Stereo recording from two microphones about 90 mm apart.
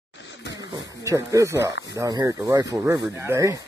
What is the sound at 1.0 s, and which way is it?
Speech, 35° right (ahead or behind).